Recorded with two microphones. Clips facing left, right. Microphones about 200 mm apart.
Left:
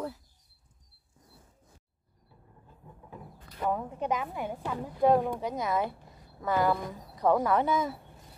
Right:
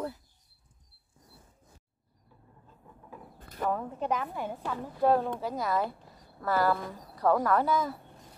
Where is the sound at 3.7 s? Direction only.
10° left (ahead or behind).